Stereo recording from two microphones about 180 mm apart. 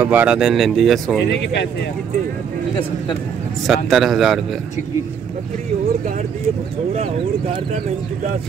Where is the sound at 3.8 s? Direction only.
Centre (ahead or behind).